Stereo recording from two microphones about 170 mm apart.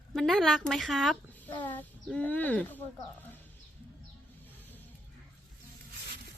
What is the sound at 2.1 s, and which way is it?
Speech, 10° left (ahead or behind).